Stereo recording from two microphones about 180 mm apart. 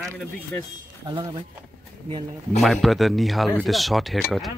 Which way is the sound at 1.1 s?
25° right (ahead or behind).